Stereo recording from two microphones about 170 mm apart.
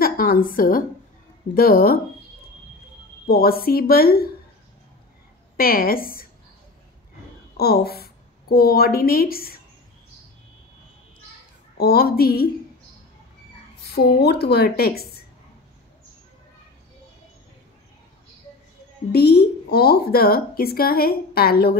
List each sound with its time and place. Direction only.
0.0 s a woman's voice: 60° left (ahead or behind)
3.3 s speech: 65° left (ahead or behind)
5.6 s speech: 60° left (ahead or behind)
7.5 s a woman's voice: 65° left (ahead or behind)
11.8 s speech: 65° left (ahead or behind)
13.8 s a woman's voice: 70° left (ahead or behind)
19.1 s speech: 70° left (ahead or behind)